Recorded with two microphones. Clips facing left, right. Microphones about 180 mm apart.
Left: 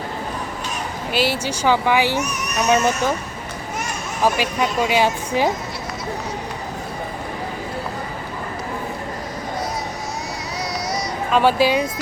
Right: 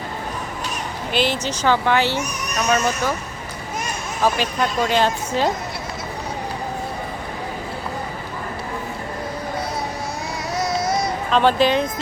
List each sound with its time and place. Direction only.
1.1 s speech: 10° left (ahead or behind)
4.2 s speech: 10° left (ahead or behind)
10.3 s vehicle: 50° right (ahead or behind)
11.3 s speech: 10° left (ahead or behind)